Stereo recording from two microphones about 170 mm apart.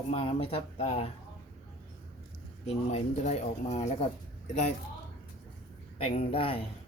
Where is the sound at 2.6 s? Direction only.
40° left (ahead or behind).